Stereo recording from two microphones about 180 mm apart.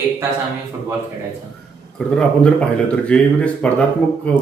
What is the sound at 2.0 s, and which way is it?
Speech, 5° left (ahead or behind).